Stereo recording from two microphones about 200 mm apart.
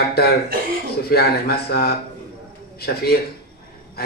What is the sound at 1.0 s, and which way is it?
Speech, 50° left (ahead or behind).